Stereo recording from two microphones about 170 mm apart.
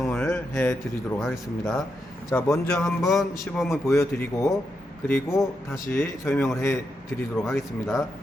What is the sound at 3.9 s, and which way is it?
Speech, 15° left (ahead or behind).